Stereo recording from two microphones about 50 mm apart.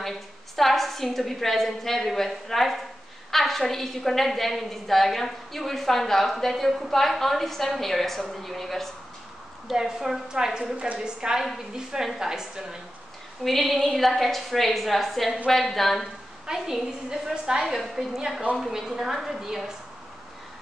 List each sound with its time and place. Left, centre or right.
0.6 s a woman's voice: centre
9.7 s a woman's voice: centre
13.4 s a woman's voice: centre
16.4 s a woman's voice: centre